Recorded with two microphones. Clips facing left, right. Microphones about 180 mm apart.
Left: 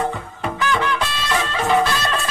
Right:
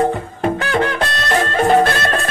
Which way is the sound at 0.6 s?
60° right (ahead or behind).